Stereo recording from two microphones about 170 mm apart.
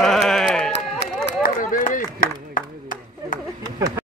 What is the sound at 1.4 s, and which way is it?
Run, 50° left (ahead or behind).